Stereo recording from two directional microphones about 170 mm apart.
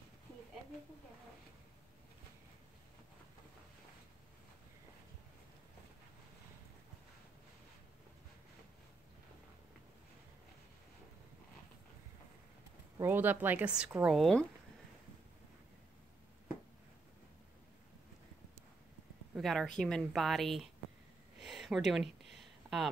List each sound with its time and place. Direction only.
13.0 s speech: 10° right (ahead or behind)
19.3 s speech: centre (ahead or behind)
21.4 s a sound: centre (ahead or behind)